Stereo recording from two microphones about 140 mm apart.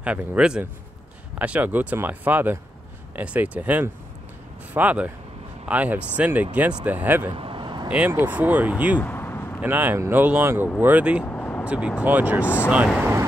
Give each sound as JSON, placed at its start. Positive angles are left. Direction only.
{"t": 0.0, "sound": "speech", "side_deg": -10}
{"t": 7.3, "sound": "vehicle", "side_deg": -35}
{"t": 7.9, "sound": "speech", "side_deg": -15}
{"t": 9.0, "sound": "vehicle", "side_deg": 15}
{"t": 9.6, "sound": "speech", "side_deg": -10}
{"t": 11.2, "sound": "vehicle", "side_deg": 10}
{"t": 11.6, "sound": "speech", "side_deg": -10}